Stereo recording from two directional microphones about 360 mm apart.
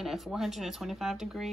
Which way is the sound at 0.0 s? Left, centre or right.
Centre.